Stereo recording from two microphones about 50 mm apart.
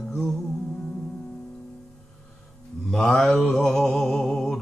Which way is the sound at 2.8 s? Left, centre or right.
Centre.